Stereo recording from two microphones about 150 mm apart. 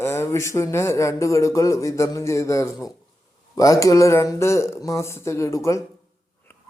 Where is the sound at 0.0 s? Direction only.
15° left (ahead or behind).